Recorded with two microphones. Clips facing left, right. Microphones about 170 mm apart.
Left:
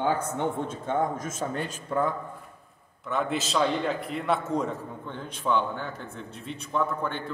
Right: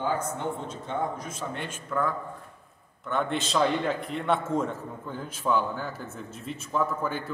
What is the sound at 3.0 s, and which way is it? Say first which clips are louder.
A man's voice: even; centre (ahead or behind).